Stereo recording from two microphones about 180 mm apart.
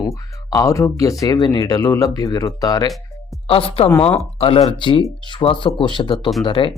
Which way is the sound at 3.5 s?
30° left (ahead or behind).